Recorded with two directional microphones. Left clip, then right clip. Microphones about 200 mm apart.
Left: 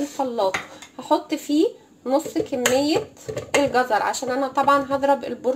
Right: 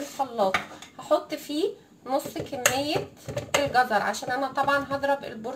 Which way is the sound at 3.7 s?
50° left (ahead or behind).